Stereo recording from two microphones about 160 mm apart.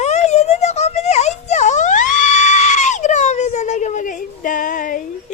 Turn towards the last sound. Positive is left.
turn(degrees=55)  # may be behind; listen again after turning